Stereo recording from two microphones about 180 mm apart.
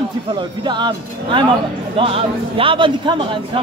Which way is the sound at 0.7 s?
25° right (ahead or behind).